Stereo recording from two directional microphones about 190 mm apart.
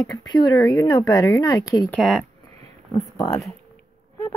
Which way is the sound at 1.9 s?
Centre (ahead or behind).